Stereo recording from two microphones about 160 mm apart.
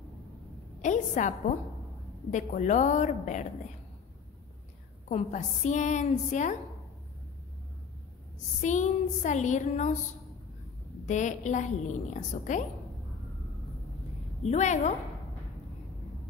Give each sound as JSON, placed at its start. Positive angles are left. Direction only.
{"t": 0.8, "sound": "a woman's voice", "side_deg": 50}
{"t": 2.3, "sound": "a woman's voice", "side_deg": 50}
{"t": 5.0, "sound": "a woman's voice", "side_deg": 50}
{"t": 8.5, "sound": "a woman's voice", "side_deg": 50}
{"t": 11.1, "sound": "a woman's voice", "side_deg": 50}
{"t": 14.4, "sound": "a woman's voice", "side_deg": 45}